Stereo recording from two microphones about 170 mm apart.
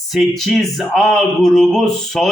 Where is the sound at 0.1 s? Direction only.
Centre (ahead or behind).